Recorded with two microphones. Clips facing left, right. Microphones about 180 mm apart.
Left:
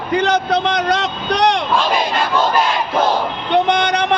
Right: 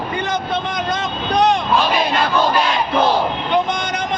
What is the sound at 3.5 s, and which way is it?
Vehicle, 65° left (ahead or behind).